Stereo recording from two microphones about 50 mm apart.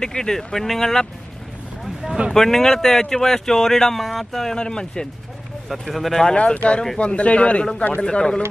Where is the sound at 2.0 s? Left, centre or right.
Centre.